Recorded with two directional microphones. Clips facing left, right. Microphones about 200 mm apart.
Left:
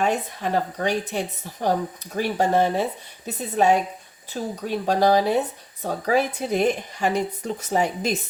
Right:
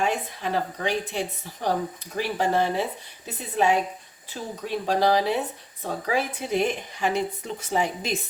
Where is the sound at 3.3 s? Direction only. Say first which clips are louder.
Left 3 dB; 40° left (ahead or behind).